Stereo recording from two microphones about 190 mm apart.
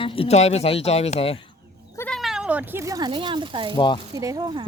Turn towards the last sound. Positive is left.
turn(degrees=-20)  # may be behind; listen again after turning